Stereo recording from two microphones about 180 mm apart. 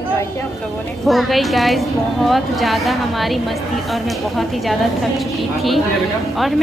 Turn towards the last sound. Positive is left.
turn(degrees=0)  # may be behind; listen again after turning